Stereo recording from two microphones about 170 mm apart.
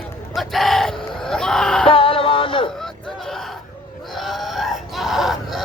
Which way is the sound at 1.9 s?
35° left (ahead or behind).